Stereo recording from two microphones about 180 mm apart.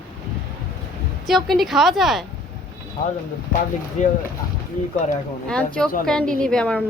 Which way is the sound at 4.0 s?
45° left (ahead or behind).